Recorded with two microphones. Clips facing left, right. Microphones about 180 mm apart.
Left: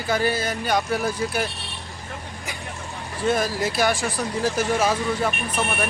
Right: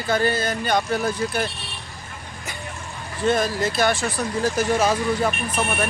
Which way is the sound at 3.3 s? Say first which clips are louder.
Right 1 dB; 10° left (ahead or behind).